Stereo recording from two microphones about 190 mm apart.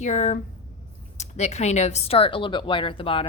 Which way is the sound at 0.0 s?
40° left (ahead or behind).